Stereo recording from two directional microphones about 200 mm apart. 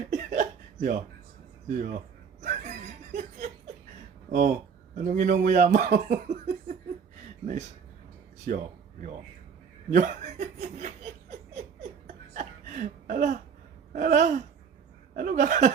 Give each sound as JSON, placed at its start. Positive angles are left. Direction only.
{"t": 0.1, "sound": "a sound", "side_deg": -40}
{"t": 1.6, "sound": "speech", "side_deg": -40}
{"t": 2.4, "sound": "chuckle", "side_deg": -35}
{"t": 4.3, "sound": "speech", "side_deg": -40}
{"t": 8.4, "sound": "a man's voice", "side_deg": -40}
{"t": 11.5, "sound": "laughter", "side_deg": -35}
{"t": 13.9, "sound": "speech", "side_deg": -40}